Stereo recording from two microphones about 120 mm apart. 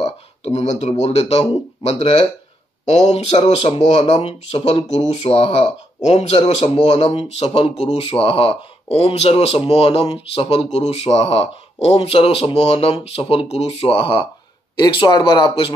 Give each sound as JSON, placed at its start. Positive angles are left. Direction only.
{"t": 0.0, "sound": "speech", "side_deg": 65}
{"t": 2.8, "sound": "speech", "side_deg": 70}